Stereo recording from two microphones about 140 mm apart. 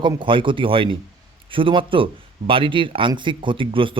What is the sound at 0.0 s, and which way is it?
Speech, 35° right (ahead or behind).